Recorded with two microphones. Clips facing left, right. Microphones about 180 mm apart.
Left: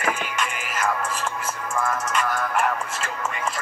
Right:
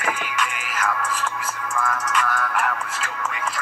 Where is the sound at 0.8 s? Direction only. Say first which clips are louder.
Even; 25° left (ahead or behind).